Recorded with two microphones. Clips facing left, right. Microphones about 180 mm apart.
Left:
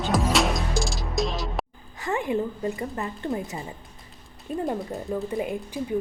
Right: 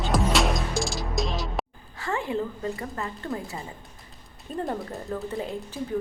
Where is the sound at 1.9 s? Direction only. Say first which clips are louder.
Left 2 dB; 15° left (ahead or behind).